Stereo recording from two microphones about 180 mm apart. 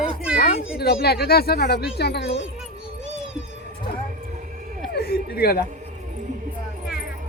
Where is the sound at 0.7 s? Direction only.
60° left (ahead or behind).